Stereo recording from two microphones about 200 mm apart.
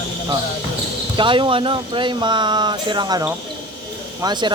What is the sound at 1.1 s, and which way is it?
Speech, 25° right (ahead or behind).